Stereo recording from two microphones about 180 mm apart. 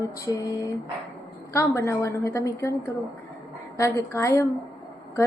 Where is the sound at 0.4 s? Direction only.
20° left (ahead or behind).